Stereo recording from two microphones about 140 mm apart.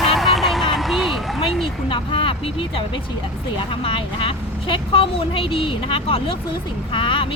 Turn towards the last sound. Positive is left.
turn(degrees=35)  # may be behind; listen again after turning